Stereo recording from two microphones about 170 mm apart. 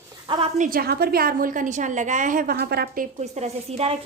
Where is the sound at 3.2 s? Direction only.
40° right (ahead or behind).